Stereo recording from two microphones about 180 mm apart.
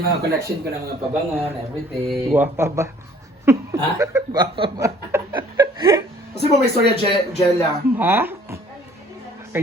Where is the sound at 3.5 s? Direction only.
15° right (ahead or behind).